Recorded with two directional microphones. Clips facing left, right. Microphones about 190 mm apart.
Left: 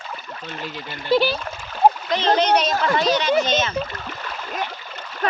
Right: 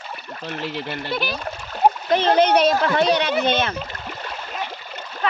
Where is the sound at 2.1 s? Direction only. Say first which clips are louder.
Right 2 dB; 55° right (ahead or behind).